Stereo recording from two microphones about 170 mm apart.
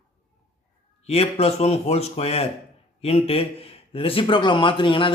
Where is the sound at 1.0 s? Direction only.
35° left (ahead or behind).